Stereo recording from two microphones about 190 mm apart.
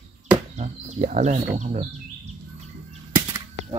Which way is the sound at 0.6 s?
35° right (ahead or behind).